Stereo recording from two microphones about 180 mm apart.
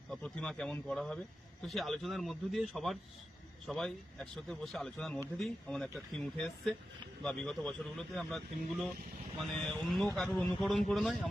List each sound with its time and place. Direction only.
0.1 s a man's voice: 5° left (ahead or behind)